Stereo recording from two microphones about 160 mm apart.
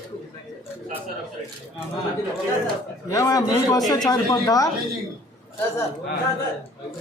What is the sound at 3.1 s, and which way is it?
A man's voice, 20° left (ahead or behind).